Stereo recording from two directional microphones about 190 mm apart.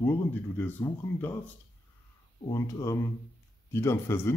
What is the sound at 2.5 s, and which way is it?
Speech, 15° left (ahead or behind).